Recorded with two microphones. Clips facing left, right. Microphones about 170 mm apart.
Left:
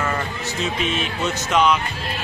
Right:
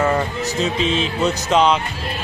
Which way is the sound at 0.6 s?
30° right (ahead or behind).